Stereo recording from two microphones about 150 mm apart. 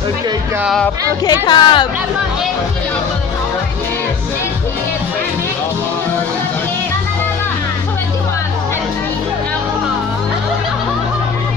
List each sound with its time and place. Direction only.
1.2 s a woman's voice: 30° left (ahead or behind)